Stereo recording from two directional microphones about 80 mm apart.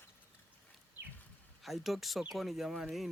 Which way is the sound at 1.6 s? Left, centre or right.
Centre.